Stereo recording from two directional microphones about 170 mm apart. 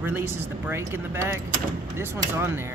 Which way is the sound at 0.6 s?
15° right (ahead or behind).